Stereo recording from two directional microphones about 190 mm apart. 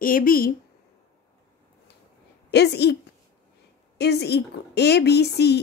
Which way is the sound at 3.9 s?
60° left (ahead or behind).